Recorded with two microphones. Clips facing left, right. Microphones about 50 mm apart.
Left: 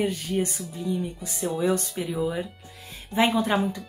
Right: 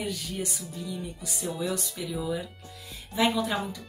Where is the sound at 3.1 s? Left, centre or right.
Left.